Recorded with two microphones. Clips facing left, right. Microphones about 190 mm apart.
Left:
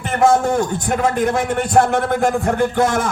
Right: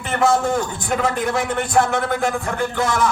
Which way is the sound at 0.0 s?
50° left (ahead or behind).